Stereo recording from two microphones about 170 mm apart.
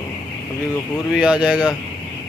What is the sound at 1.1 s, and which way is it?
Speech, 5° right (ahead or behind).